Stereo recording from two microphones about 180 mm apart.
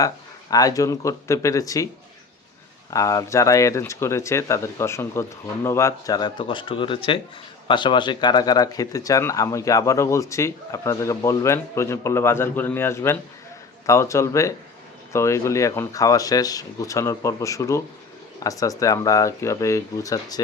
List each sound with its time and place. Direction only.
0.5 s speech: 20° left (ahead or behind)
2.9 s speech: 20° left (ahead or behind)